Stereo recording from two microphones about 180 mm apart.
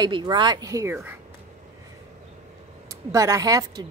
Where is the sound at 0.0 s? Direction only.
25° right (ahead or behind).